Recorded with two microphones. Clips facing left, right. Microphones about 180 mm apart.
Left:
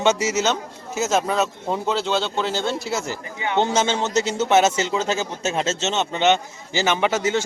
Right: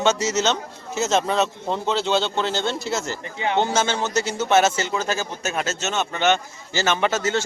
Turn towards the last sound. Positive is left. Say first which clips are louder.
# left 1 dB
turn(degrees=15)  # may be behind; listen again after turning